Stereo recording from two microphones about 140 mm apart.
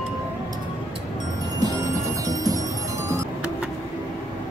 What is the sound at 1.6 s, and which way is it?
Music, 25° right (ahead or behind).